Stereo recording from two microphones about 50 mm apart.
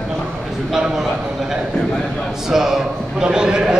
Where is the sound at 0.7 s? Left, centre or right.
Centre.